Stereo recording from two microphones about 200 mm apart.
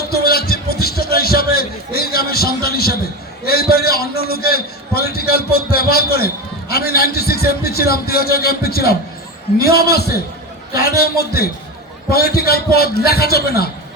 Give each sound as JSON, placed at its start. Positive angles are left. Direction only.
{"t": 0.0, "sound": "a man's voice", "side_deg": 50}